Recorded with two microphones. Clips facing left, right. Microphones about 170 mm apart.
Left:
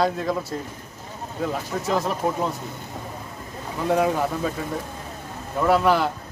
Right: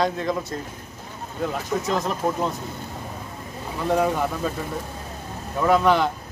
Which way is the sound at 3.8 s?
10° left (ahead or behind).